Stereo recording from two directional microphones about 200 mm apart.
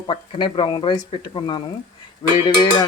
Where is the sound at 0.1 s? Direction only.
25° left (ahead or behind).